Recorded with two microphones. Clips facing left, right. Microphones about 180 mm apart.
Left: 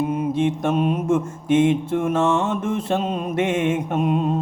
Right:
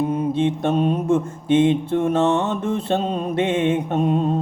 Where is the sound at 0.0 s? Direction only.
30° right (ahead or behind).